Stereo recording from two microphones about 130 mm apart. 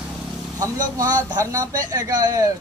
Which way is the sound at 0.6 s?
25° right (ahead or behind).